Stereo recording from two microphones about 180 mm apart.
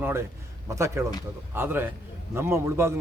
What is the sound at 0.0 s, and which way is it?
Speech, 15° right (ahead or behind).